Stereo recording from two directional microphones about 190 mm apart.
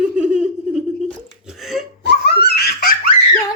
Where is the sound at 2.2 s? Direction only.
60° left (ahead or behind).